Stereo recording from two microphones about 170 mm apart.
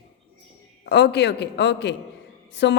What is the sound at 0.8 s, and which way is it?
A woman's voice, 80° left.